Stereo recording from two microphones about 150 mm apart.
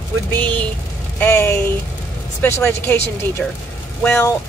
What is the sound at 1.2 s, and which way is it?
Speech, 15° left (ahead or behind).